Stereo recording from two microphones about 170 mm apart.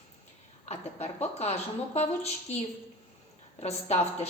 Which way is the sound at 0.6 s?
40° left (ahead or behind).